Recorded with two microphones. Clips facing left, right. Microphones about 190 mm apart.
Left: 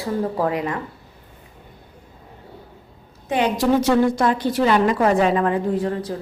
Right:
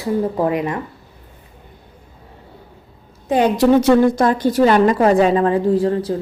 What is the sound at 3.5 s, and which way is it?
A woman's voice, 50° right (ahead or behind).